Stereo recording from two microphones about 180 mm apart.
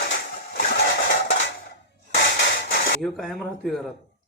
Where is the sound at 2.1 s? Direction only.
65° left (ahead or behind).